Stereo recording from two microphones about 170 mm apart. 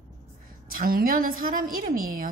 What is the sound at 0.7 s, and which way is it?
A woman's voice, 60° right (ahead or behind).